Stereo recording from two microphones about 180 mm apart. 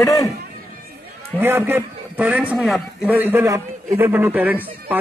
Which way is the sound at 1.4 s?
10° right (ahead or behind).